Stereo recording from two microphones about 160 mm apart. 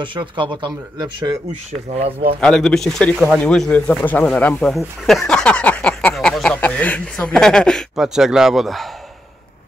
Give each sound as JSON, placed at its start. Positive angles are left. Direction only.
{"t": 0.0, "sound": "speech", "side_deg": -30}
{"t": 1.9, "sound": "speech", "side_deg": -40}
{"t": 2.4, "sound": "speech", "side_deg": 5}